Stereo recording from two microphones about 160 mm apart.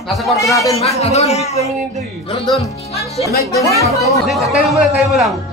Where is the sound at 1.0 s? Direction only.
40° left (ahead or behind).